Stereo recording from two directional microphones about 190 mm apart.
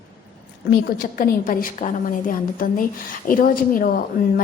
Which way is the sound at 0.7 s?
50° left (ahead or behind).